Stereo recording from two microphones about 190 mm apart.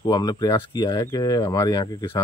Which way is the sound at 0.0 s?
20° left (ahead or behind).